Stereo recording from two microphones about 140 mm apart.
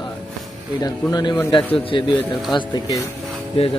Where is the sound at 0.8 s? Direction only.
30° left (ahead or behind).